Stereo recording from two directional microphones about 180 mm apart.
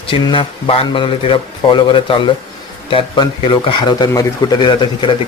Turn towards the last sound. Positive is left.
turn(degrees=30)  # may be behind; listen again after turning